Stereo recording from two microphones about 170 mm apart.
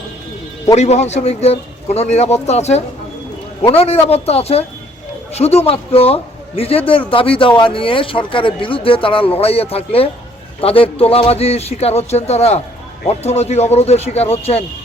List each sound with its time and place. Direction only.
0.8 s speech: 40° left (ahead or behind)